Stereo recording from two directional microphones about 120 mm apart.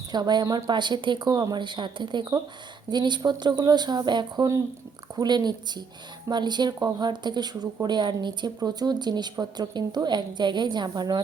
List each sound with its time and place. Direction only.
0.1 s speech: 35° right (ahead or behind)